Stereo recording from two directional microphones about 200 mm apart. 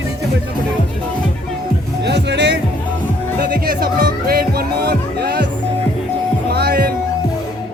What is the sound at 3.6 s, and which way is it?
Music, 50° right (ahead or behind).